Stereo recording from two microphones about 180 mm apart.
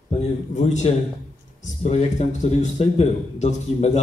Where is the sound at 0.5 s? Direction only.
40° left (ahead or behind).